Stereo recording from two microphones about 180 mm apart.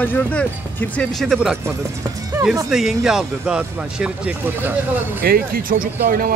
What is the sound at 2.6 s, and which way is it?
Speech, centre (ahead or behind).